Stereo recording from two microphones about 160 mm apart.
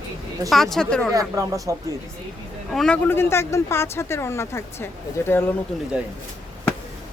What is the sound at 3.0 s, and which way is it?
Speech, 15° left (ahead or behind).